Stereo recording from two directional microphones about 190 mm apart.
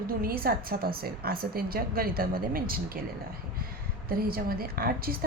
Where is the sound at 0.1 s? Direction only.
50° right (ahead or behind).